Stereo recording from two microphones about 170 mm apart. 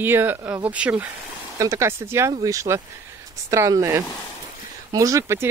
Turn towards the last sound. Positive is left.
turn(degrees=-15)  # may be behind; listen again after turning